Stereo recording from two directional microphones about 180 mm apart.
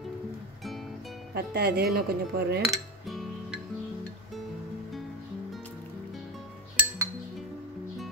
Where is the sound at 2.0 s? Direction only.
60° right (ahead or behind).